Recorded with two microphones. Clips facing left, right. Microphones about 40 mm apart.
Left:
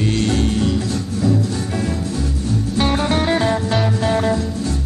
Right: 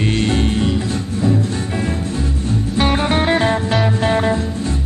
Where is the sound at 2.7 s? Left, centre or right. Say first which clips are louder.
Right 2 dB; right.